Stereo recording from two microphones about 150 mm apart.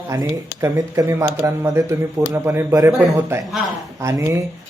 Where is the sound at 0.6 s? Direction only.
20° right (ahead or behind).